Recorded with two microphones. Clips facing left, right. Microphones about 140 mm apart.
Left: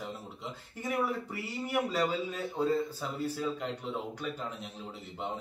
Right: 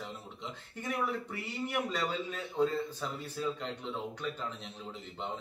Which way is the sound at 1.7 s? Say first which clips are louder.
Left 5 dB; 10° left (ahead or behind).